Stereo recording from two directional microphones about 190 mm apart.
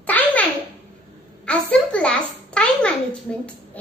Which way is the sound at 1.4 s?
5° left (ahead or behind).